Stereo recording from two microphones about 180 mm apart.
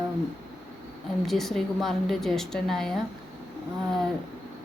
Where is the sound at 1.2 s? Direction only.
Centre (ahead or behind).